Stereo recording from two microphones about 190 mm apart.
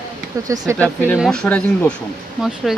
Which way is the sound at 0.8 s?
10° left (ahead or behind).